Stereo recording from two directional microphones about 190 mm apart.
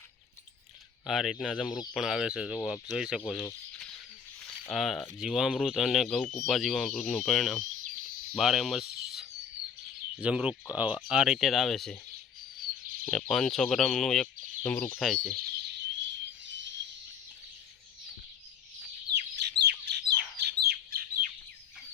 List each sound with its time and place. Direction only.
1.0 s speech: centre (ahead or behind)
1.6 s speech: 20° left (ahead or behind)
1.9 s speech: centre (ahead or behind)
13.1 s speech: 5° left (ahead or behind)
15.0 s speech: centre (ahead or behind)
15.4 s bird: 60° right (ahead or behind); by 16.7 s 75° right (ahead or behind)
19.1 s bird: 60° right (ahead or behind)